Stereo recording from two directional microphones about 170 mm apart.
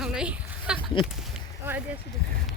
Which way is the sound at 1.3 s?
10° right (ahead or behind).